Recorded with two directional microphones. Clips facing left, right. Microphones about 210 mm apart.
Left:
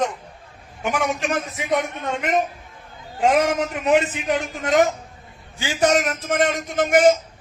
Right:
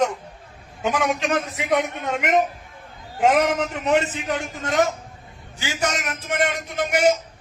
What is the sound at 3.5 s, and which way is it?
Speech, 10° left (ahead or behind).